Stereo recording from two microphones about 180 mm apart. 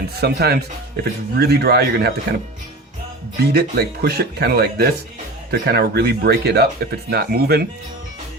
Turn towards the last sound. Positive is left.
turn(degrees=-60)  # may be behind; listen again after turning